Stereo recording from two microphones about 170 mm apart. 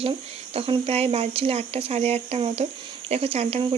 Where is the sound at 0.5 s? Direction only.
35° right (ahead or behind).